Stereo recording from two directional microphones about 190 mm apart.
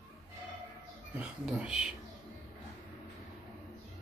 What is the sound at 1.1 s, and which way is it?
Speech, 5° right (ahead or behind).